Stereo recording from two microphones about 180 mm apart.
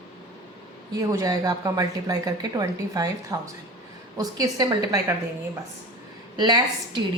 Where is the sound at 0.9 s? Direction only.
20° right (ahead or behind).